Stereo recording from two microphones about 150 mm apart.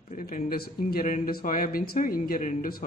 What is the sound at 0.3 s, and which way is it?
Speech, 90° left.